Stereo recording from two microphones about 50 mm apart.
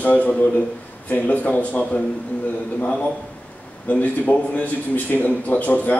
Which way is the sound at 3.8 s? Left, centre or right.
Left.